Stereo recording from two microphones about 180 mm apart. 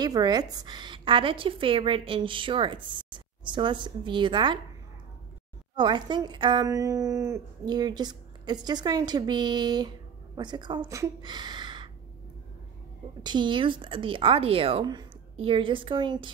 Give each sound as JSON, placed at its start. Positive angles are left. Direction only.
{"t": 0.0, "sound": "a woman's voice", "side_deg": -20}
{"t": 5.8, "sound": "a woman's voice", "side_deg": -25}
{"t": 13.2, "sound": "a woman's voice", "side_deg": -25}